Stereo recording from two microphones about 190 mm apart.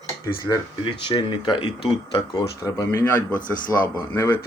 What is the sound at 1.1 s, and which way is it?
Speech, 25° left (ahead or behind).